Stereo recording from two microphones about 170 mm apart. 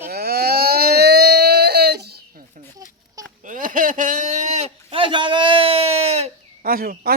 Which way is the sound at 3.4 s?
50° right (ahead or behind).